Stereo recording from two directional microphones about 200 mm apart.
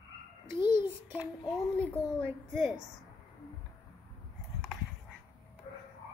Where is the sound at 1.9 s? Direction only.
5° left (ahead or behind).